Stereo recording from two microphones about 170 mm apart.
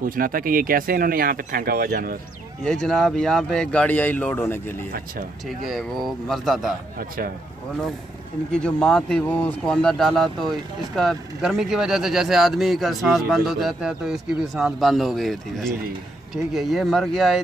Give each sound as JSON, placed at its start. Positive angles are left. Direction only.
{"t": 0.0, "sound": "speech", "side_deg": -55}
{"t": 2.6, "sound": "speech", "side_deg": 5}
{"t": 5.7, "sound": "speech", "side_deg": 0}
{"t": 8.5, "sound": "speech", "side_deg": 5}